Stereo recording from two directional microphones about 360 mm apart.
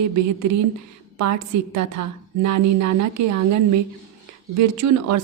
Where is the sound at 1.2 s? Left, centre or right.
Right.